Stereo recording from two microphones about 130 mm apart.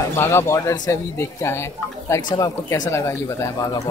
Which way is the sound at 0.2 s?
20° left (ahead or behind).